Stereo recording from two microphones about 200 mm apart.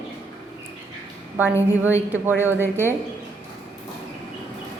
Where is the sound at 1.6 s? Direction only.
10° right (ahead or behind).